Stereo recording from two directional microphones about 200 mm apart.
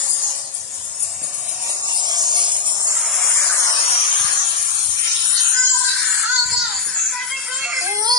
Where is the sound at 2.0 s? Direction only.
20° right (ahead or behind).